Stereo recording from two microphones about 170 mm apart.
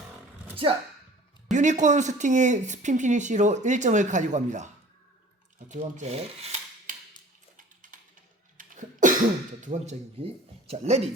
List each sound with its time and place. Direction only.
0.5 s speech: 30° right (ahead or behind)
1.5 s speech: 45° right (ahead or behind)
7.5 s a sound: 50° right (ahead or behind)
8.5 s cough: 50° right (ahead or behind)
9.6 s speech: 45° right (ahead or behind)